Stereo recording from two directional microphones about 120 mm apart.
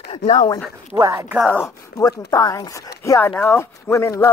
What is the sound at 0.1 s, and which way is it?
Speech, 65° left (ahead or behind).